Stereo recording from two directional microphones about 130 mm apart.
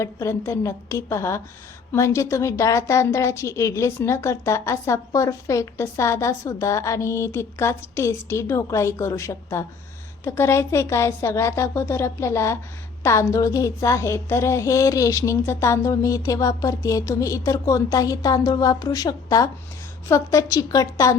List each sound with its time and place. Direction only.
0.0 s a woman's voice: 20° left (ahead or behind)